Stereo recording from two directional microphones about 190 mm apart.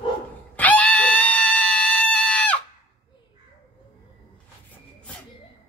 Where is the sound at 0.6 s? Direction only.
5° left (ahead or behind).